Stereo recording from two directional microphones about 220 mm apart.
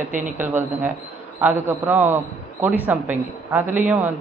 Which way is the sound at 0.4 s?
10° right (ahead or behind).